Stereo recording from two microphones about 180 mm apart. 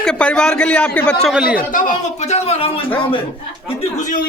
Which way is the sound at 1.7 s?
45° left (ahead or behind).